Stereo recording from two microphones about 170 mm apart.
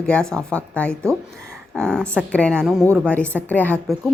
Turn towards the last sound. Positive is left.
turn(degrees=10)  # may be behind; listen again after turning